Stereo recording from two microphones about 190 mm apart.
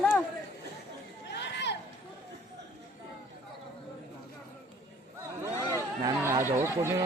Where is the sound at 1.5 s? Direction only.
65° left (ahead or behind).